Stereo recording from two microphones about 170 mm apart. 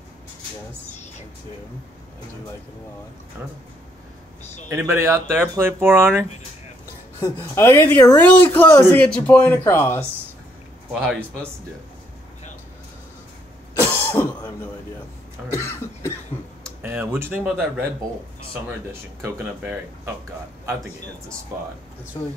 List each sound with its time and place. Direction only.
4.6 s speech: 15° right (ahead or behind)
7.2 s speech: 15° left (ahead or behind)
10.9 s speech: 5° right (ahead or behind)
13.7 s cough: 10° left (ahead or behind)
15.5 s speech: 15° left (ahead or behind)
16.8 s speech: 10° right (ahead or behind)
19.2 s speech: 15° right (ahead or behind)